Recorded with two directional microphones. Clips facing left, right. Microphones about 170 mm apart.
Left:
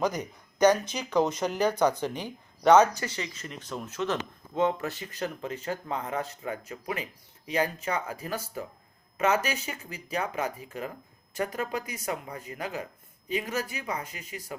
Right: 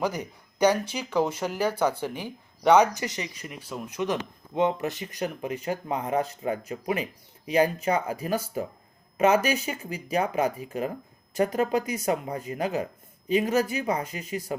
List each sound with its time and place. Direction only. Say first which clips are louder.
0.0 s speech: even; 10° right (ahead or behind)